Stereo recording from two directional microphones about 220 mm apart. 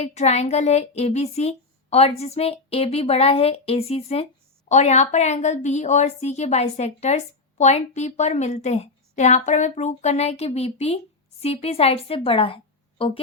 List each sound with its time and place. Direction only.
0.0 s a woman's voice: 30° left (ahead or behind)